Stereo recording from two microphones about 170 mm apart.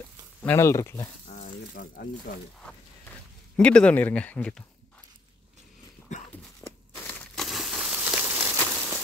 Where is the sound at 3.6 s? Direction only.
5° left (ahead or behind).